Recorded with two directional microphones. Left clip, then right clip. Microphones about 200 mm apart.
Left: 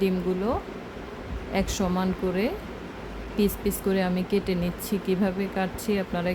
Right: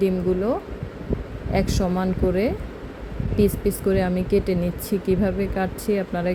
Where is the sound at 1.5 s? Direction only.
15° right (ahead or behind).